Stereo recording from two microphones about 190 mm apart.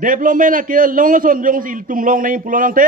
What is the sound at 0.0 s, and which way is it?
A man's voice, 45° right (ahead or behind).